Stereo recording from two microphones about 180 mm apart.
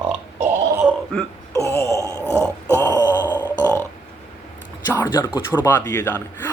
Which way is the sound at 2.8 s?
20° left (ahead or behind).